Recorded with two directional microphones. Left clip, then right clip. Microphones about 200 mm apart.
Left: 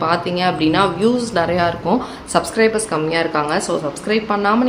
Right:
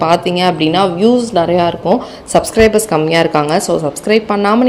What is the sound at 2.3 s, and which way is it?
Speech, 35° right (ahead or behind).